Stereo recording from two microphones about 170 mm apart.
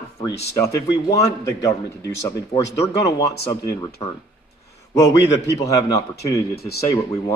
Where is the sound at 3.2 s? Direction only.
70° left (ahead or behind).